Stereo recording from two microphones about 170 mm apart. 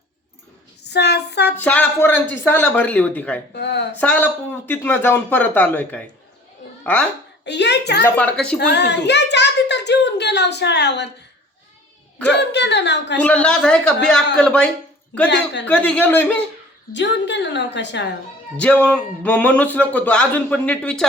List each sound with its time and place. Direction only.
0.9 s a sound: 80° left
1.5 s speech: 10° left (ahead or behind)
3.5 s a sound: 80° left
3.9 s speech: 10° left (ahead or behind)
7.4 s a sound: 85° left
8.0 s speech: 10° left (ahead or behind)
8.5 s a child's voice: 80° left
12.3 s a woman's voice: 90° left
13.1 s a woman's voice: 10° left (ahead or behind)
16.9 s a woman's voice: 90° left
18.5 s speech: 10° left (ahead or behind)